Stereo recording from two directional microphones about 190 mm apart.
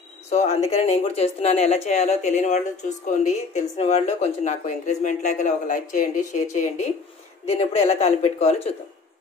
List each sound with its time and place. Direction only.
0.3 s speech: 35° left (ahead or behind)